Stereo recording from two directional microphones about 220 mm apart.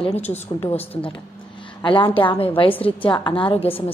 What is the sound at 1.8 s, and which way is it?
A woman's voice, 20° left (ahead or behind).